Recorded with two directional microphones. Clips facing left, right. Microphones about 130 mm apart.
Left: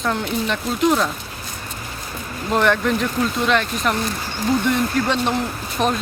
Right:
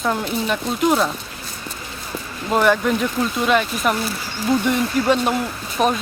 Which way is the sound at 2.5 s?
5° right (ahead or behind).